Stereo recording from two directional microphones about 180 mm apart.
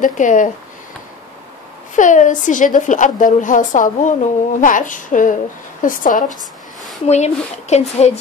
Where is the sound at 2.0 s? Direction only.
45° left (ahead or behind).